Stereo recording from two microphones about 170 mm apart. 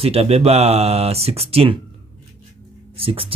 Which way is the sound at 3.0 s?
30° right (ahead or behind).